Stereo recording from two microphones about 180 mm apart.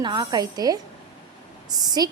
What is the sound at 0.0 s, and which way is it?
Speech, 25° right (ahead or behind).